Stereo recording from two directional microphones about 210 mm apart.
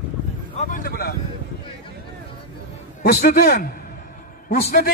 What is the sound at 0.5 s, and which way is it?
Speech, 40° left (ahead or behind).